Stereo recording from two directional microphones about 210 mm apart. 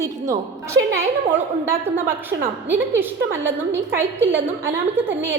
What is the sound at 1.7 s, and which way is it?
A woman's voice, 10° right (ahead or behind).